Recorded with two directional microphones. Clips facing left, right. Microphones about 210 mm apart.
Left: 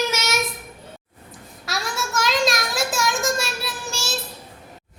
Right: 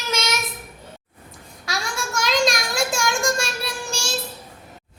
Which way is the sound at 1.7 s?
Centre (ahead or behind).